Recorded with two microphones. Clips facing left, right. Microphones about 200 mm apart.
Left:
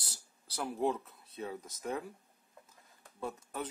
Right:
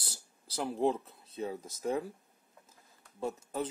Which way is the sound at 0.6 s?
30° right (ahead or behind).